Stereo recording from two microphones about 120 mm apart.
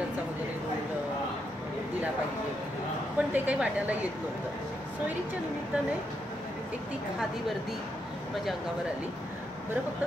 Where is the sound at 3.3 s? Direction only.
10° right (ahead or behind).